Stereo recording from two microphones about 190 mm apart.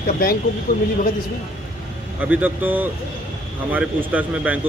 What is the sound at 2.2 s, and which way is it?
Speech, 10° right (ahead or behind).